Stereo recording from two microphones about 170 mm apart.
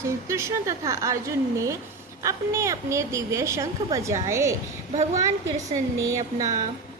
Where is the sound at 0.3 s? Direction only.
15° right (ahead or behind).